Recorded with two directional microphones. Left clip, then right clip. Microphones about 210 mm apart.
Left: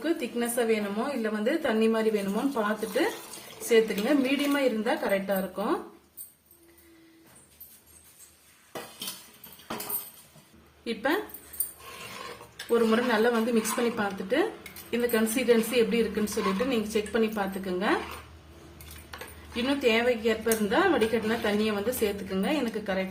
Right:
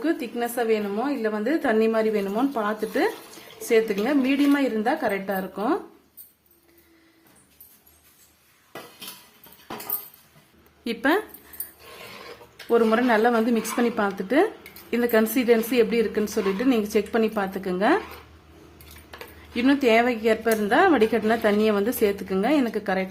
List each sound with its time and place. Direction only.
0.0 s a woman's voice: 40° right (ahead or behind)
10.8 s speech: 55° right (ahead or behind)
12.7 s a woman's voice: 40° right (ahead or behind)
19.6 s a woman's voice: 45° right (ahead or behind)